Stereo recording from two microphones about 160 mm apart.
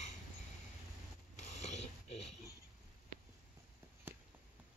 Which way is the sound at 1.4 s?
45° left (ahead or behind).